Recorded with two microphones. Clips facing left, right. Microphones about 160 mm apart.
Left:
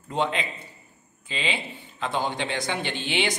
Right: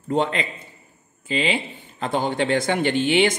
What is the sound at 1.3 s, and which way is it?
Speech, 45° right (ahead or behind).